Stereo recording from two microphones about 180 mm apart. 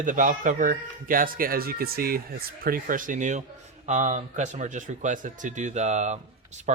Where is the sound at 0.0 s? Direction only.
45° right (ahead or behind).